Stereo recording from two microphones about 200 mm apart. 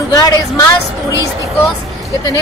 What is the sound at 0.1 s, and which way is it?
Speech, 15° left (ahead or behind).